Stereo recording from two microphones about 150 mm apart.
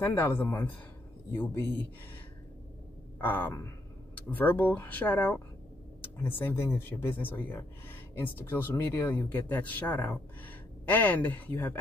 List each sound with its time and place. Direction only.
0.0 s speech: 15° left (ahead or behind)
3.2 s speech: 10° left (ahead or behind)